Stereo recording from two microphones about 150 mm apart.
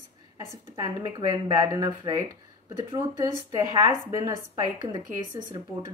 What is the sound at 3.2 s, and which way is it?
Speech, 25° right (ahead or behind).